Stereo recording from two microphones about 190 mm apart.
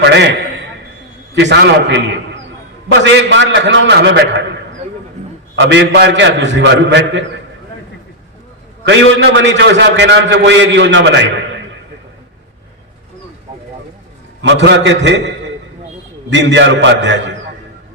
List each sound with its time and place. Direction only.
0.0 s a man's voice: 65° right (ahead or behind)
1.4 s a man's voice: 70° right (ahead or behind)
5.5 s a man's voice: 65° right (ahead or behind)
8.8 s a man's voice: 70° right (ahead or behind)
14.4 s a man's voice: 70° right (ahead or behind)
16.3 s a man's voice: 70° right (ahead or behind)